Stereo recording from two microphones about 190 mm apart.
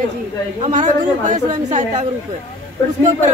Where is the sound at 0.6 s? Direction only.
35° right (ahead or behind).